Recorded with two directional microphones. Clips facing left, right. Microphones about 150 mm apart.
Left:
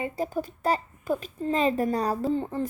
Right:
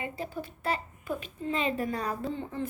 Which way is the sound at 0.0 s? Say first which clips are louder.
Left 7 dB; 40° left (ahead or behind).